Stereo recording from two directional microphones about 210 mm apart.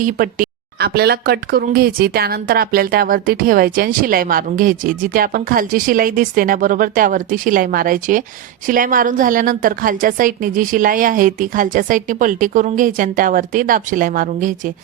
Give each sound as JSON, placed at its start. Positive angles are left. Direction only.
{"t": 0.0, "sound": "a woman's voice", "side_deg": -40}